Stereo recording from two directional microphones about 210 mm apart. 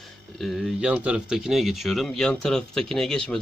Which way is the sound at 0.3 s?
Centre (ahead or behind).